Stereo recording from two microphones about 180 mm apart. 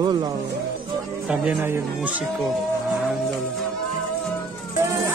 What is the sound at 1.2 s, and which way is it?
Speech, 5° right (ahead or behind).